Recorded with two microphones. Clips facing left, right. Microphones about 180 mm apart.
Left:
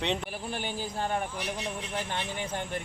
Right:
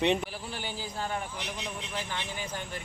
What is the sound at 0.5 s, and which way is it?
Speech, 55° left (ahead or behind).